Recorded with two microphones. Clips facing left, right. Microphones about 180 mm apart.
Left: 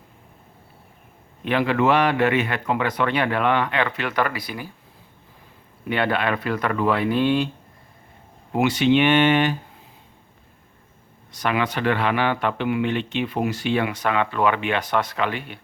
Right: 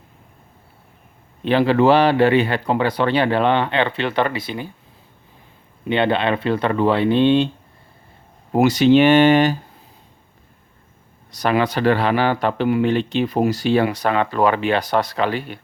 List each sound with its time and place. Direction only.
1.5 s speech: 30° right (ahead or behind)
5.9 s speech: 25° right (ahead or behind)
8.5 s speech: 40° right (ahead or behind)
11.3 s speech: 35° right (ahead or behind)